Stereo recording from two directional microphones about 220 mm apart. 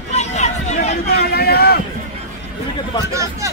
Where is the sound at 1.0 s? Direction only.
45° left (ahead or behind).